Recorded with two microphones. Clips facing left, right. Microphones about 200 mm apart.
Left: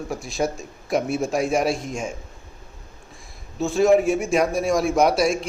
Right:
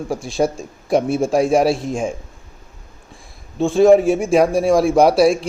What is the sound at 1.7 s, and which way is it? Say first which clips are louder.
Speech: right 6 dB; centre (ahead or behind).